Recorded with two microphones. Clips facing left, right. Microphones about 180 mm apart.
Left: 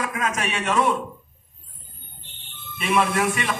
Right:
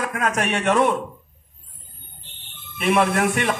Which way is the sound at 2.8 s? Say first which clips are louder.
Right 3 dB; 60° right (ahead or behind).